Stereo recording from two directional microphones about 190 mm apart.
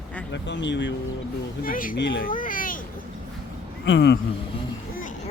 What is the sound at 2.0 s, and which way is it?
Speech, 70° left (ahead or behind).